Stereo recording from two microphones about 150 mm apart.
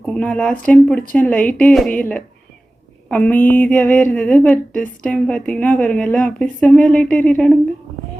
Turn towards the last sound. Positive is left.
turn(degrees=10)  # may be behind; listen again after turning